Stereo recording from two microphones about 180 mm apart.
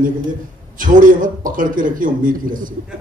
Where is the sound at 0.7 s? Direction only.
50° right (ahead or behind).